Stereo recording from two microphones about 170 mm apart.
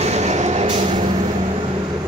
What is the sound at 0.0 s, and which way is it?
Train, 40° right (ahead or behind).